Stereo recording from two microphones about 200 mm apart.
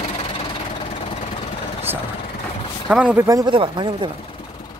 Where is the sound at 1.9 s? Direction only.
10° right (ahead or behind).